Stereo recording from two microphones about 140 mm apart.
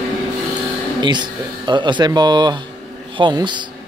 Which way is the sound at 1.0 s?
30° right (ahead or behind).